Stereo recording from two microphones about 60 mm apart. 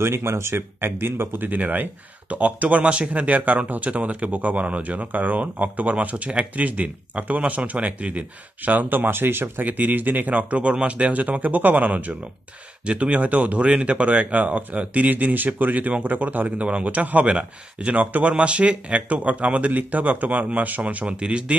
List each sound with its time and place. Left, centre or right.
0.0 s speech: right; by 21.5 s centre